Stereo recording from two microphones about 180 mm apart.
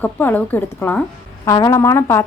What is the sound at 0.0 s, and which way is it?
A woman's voice, 10° left (ahead or behind).